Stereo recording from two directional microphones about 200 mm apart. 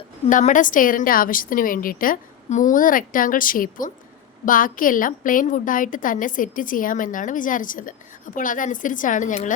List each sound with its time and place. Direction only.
0.3 s a woman's voice: 40° left (ahead or behind)